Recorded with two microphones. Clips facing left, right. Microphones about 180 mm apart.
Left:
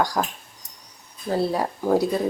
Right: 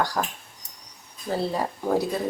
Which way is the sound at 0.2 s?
10° left (ahead or behind).